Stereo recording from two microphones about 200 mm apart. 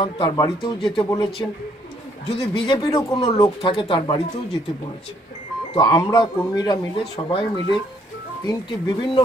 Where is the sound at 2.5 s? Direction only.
20° left (ahead or behind).